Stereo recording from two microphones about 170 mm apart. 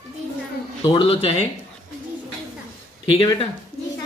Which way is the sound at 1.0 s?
35° left (ahead or behind).